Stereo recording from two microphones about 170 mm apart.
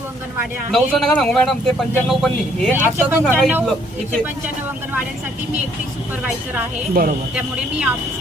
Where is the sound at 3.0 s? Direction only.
10° right (ahead or behind).